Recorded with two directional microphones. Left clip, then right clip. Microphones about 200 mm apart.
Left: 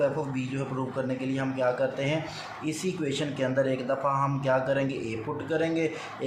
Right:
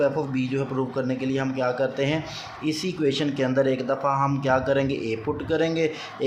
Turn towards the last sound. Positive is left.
turn(degrees=-50)  # may be behind; listen again after turning